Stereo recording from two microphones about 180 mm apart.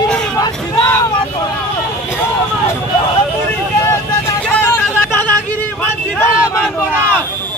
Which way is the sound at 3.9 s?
10° left (ahead or behind).